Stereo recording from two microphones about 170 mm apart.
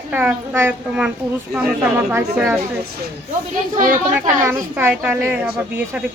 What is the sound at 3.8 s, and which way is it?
Speech, 50° right (ahead or behind).